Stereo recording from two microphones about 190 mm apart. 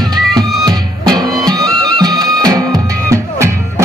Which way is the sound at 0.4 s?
20° right (ahead or behind).